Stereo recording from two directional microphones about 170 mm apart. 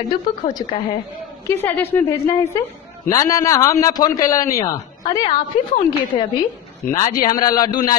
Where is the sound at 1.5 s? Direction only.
10° left (ahead or behind).